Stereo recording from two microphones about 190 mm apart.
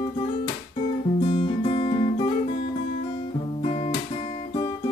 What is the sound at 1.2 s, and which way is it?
Guitar, 30° left (ahead or behind).